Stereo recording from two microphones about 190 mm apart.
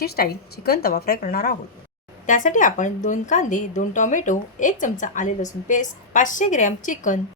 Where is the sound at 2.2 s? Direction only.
40° left (ahead or behind).